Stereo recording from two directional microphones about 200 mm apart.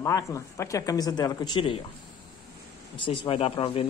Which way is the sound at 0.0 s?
15° left (ahead or behind).